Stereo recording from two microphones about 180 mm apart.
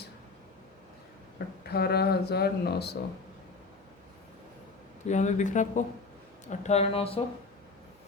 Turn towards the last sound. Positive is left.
turn(degrees=30)  # may be behind; listen again after turning